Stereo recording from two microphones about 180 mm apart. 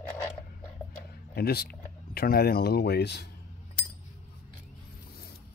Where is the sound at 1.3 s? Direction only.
60° left (ahead or behind).